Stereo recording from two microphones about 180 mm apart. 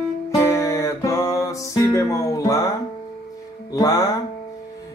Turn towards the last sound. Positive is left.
turn(degrees=20)  # may be behind; listen again after turning